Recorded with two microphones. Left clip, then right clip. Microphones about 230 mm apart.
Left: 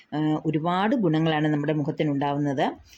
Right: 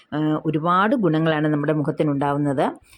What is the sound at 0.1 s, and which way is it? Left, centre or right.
Speech, centre.